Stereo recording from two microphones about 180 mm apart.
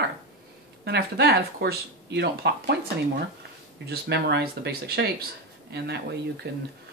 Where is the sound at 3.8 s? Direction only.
65° right (ahead or behind).